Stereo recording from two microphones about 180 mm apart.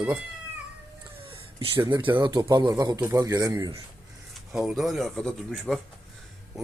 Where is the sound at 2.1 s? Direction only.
25° right (ahead or behind).